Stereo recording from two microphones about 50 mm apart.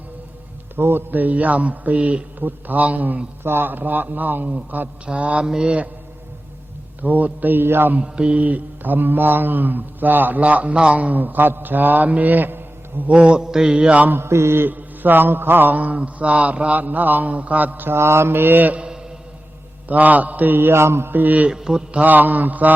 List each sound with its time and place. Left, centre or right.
0.8 s a man's voice: right
3.4 s a man's voice: right
5.0 s mantra: right
5.5 s a man's voice: centre
7.0 s a man's voice: right
8.0 s a man's voice: centre; by 13.1 s right
13.1 s mantra: right
14.2 s mantra: right
14.7 s a man's voice: right
19.9 s a man's voice: right
21.1 s a man's voice: right
21.5 s a man's voice: centre
22.0 s a man's voice: right